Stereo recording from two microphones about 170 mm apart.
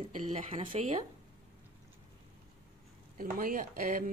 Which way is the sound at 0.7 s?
35° right (ahead or behind).